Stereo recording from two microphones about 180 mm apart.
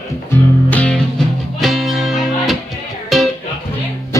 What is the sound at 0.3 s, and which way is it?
Music, 10° left (ahead or behind).